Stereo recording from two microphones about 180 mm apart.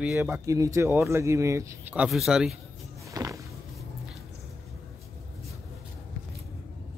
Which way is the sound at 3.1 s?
20° right (ahead or behind).